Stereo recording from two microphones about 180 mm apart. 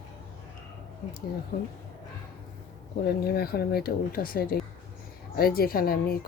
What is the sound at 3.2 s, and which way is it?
A woman's voice, 60° left (ahead or behind).